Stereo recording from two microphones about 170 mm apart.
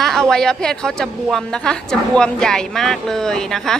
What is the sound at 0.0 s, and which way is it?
A woman's voice, centre (ahead or behind).